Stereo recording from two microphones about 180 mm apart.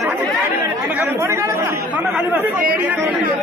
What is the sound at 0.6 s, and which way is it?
Chatter, 10° right (ahead or behind).